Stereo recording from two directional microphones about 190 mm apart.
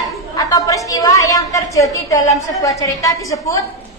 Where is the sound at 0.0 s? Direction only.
15° left (ahead or behind).